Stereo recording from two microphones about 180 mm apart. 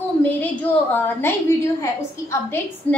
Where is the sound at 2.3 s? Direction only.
15° left (ahead or behind).